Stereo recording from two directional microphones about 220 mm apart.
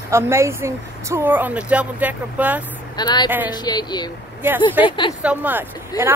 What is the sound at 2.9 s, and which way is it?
A woman's voice, 20° left (ahead or behind).